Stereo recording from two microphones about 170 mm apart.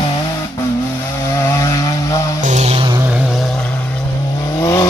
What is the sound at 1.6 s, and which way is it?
Chainsaw, 20° left (ahead or behind).